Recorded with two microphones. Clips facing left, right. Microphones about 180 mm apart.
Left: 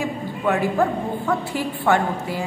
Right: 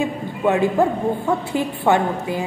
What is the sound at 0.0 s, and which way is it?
A woman's voice, 20° right (ahead or behind).